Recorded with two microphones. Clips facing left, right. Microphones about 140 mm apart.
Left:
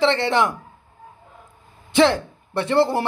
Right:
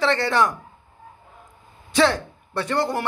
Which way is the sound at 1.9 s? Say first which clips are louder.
Left 3 dB; 25° left (ahead or behind).